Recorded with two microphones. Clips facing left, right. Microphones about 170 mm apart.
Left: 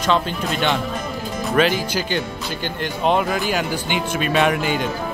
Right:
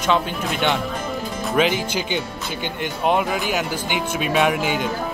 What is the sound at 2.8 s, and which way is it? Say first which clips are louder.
Speech: left 1 dB; 10° right (ahead or behind).